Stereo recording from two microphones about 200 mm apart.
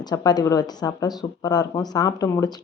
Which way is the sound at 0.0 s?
20° left (ahead or behind).